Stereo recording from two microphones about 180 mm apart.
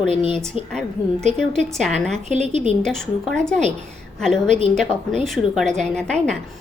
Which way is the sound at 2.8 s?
5° left (ahead or behind).